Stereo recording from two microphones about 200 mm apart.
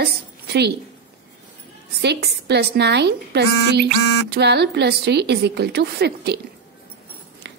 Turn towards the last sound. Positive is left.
turn(degrees=-60)  # may be behind; listen again after turning